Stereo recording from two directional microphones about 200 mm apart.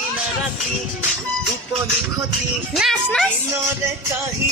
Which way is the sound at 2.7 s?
Centre (ahead or behind).